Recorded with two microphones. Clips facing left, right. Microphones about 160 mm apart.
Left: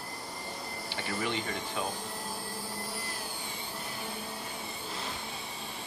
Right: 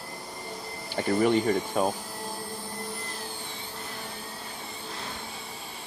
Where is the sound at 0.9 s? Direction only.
45° right (ahead or behind).